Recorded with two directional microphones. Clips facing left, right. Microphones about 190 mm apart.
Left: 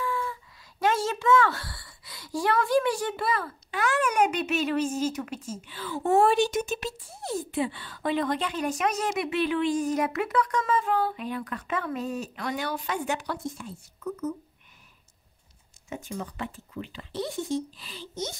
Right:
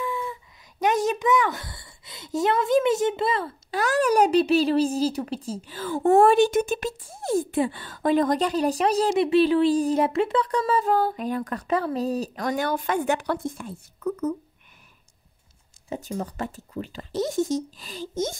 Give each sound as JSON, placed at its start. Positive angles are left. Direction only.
{"t": 0.0, "sound": "a sound", "side_deg": -20}
{"t": 3.8, "sound": "speech", "side_deg": -35}
{"t": 15.9, "sound": "speech", "side_deg": -35}